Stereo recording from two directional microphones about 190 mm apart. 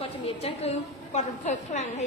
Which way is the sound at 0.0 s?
35° left (ahead or behind).